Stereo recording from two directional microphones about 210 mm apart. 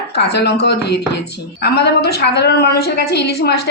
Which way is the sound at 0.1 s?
55° left (ahead or behind).